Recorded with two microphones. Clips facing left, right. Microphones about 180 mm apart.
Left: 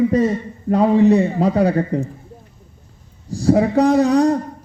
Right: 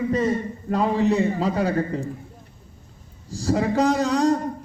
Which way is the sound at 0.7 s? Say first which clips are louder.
Left 8 dB; 60° left (ahead or behind).